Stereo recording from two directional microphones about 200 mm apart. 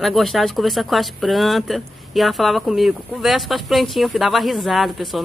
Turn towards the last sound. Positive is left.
turn(degrees=0)  # may be behind; listen again after turning